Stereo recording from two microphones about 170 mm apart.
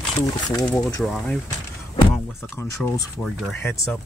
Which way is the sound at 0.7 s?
15° left (ahead or behind).